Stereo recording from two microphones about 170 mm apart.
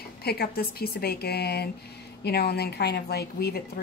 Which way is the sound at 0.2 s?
65° left (ahead or behind).